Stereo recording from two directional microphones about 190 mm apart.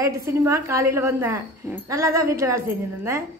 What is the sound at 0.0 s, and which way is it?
A woman's voice, 15° right (ahead or behind).